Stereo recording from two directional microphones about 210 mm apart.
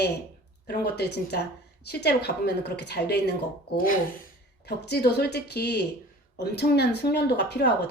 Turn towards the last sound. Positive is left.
turn(degrees=50)  # may be behind; listen again after turning